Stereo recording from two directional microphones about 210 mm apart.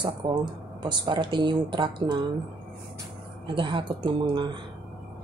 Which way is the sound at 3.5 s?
25° right (ahead or behind).